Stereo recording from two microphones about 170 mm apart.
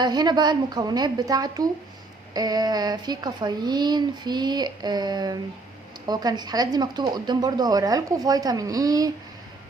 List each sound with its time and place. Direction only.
0.0 s speech: 25° right (ahead or behind)